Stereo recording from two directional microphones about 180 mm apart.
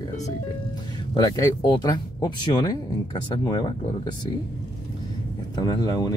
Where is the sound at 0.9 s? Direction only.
20° left (ahead or behind).